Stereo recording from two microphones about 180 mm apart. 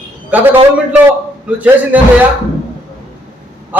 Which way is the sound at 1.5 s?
10° right (ahead or behind).